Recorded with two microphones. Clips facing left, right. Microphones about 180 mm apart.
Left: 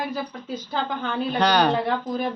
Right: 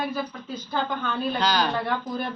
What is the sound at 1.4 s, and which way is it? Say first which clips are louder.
Speech: left 6 dB; 65° left (ahead or behind).